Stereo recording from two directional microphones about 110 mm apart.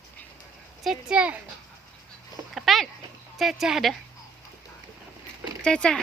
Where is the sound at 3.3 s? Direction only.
Centre (ahead or behind).